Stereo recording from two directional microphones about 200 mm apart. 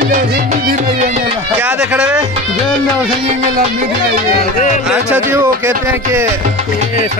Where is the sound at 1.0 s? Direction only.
35° right (ahead or behind).